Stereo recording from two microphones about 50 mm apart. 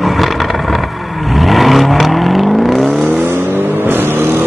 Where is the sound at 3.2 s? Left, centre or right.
Right.